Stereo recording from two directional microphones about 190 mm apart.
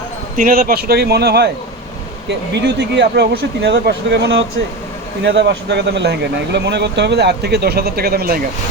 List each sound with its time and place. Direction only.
0.3 s speech: 50° right (ahead or behind)
2.5 s speech: 60° right (ahead or behind)